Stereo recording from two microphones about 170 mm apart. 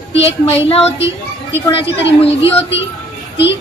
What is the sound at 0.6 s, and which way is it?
A woman's voice, 35° left (ahead or behind).